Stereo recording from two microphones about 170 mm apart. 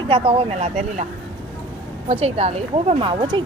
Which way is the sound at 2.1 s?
35° right (ahead or behind).